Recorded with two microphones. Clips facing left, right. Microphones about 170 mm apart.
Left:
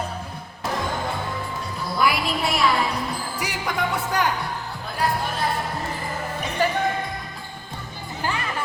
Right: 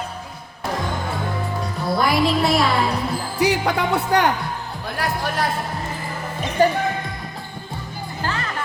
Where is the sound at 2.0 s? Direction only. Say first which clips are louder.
Right 4 dB; 35° right (ahead or behind).